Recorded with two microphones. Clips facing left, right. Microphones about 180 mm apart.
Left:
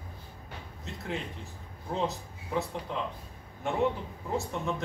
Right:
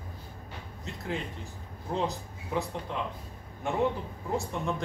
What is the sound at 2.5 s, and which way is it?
Speech, centre (ahead or behind).